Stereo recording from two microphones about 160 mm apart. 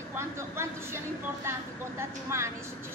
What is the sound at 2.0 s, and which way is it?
Speech, 15° right (ahead or behind).